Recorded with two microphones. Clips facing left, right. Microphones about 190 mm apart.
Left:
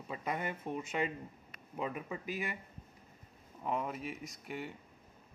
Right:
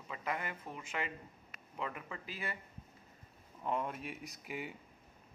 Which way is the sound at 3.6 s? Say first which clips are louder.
Left 1 dB; 5° left (ahead or behind).